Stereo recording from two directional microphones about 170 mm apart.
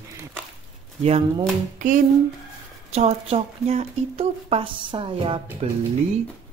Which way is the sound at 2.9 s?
35° right (ahead or behind).